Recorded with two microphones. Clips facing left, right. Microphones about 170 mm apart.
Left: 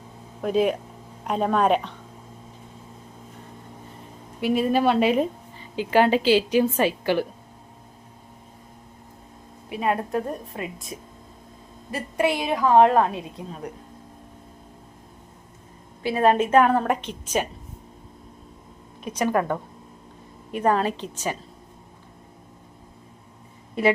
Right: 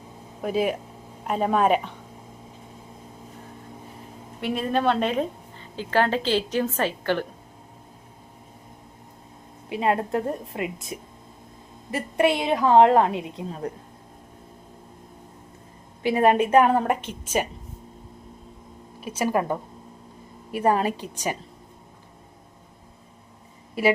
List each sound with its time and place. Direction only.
0.4 s a woman's voice: 5° right (ahead or behind)
4.4 s a woman's voice: 5° left (ahead or behind)
9.6 s a woman's voice: 25° right (ahead or behind)
16.0 s a woman's voice: 15° right (ahead or behind)
19.0 s a woman's voice: 5° right (ahead or behind)